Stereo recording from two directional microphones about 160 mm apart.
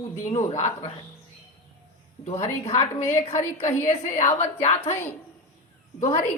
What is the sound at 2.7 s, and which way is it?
Speech, 20° left (ahead or behind).